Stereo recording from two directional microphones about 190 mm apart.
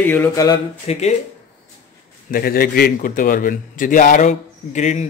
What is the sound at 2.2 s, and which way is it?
A man's voice, 50° left (ahead or behind).